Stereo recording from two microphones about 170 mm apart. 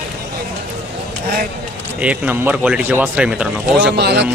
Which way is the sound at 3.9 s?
80° right.